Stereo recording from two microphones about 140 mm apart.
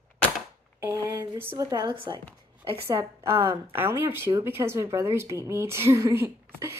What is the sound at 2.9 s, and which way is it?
A woman's voice, 20° right (ahead or behind).